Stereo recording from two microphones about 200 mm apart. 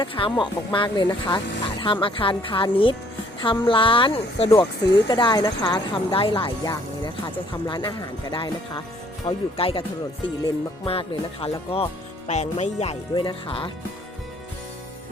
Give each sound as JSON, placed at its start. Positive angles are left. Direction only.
{"t": 0.0, "sound": "speech", "side_deg": 25}